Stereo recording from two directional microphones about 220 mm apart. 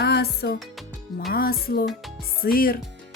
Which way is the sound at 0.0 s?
45° left (ahead or behind).